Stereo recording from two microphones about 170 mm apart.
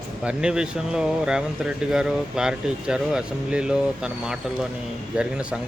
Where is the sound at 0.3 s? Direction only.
5° right (ahead or behind).